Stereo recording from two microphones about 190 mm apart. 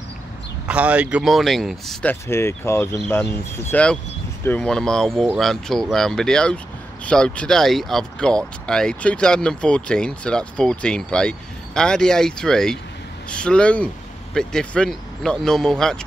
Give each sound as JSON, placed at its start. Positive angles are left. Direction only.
{"t": 0.7, "sound": "speech", "side_deg": -5}
{"t": 2.2, "sound": "speech", "side_deg": 15}